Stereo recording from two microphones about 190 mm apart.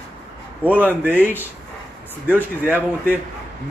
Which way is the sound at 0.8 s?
10° right (ahead or behind).